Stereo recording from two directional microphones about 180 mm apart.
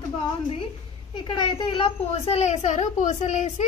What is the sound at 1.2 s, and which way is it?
A woman's voice, 25° left (ahead or behind).